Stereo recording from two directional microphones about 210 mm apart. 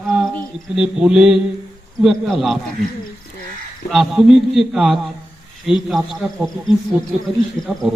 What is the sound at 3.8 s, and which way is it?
A man's voice, centre (ahead or behind).